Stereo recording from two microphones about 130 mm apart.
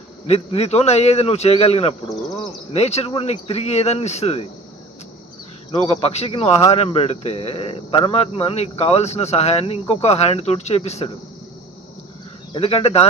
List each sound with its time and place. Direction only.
0.3 s speech: 50° left (ahead or behind)
5.8 s speech: 55° left (ahead or behind)
12.5 s speech: 50° left (ahead or behind)